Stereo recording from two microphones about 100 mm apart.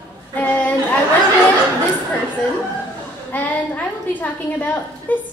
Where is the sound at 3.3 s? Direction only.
15° left (ahead or behind).